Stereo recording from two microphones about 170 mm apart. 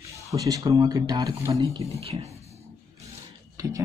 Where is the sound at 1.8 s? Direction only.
35° right (ahead or behind).